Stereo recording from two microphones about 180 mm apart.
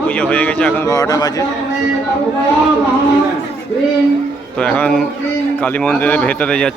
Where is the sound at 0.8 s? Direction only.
20° left (ahead or behind).